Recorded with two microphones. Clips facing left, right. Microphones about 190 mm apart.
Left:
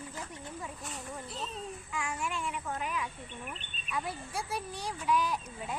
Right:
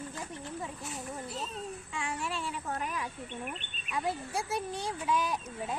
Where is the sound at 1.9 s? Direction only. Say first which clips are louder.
Left 1 dB; 30° right (ahead or behind).